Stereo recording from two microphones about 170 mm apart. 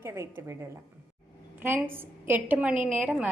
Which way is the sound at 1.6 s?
15° right (ahead or behind).